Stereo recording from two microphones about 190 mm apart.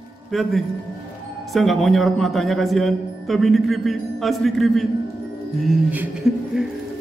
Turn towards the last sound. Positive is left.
turn(degrees=-5)  # may be behind; listen again after turning